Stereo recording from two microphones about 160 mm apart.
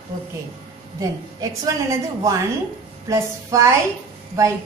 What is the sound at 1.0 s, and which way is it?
Speech, 20° right (ahead or behind).